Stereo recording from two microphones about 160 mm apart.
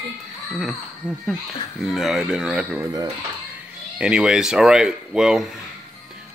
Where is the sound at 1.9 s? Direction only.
Centre (ahead or behind).